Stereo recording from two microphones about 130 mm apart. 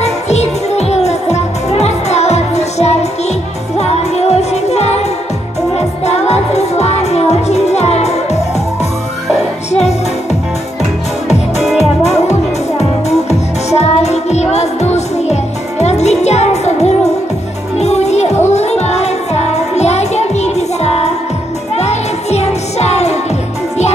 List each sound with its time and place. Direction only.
0.0 s music: 60° left (ahead or behind)
9.7 s music: 55° left (ahead or behind)
11.6 s music: centre (ahead or behind)
12.0 s music: 55° left (ahead or behind)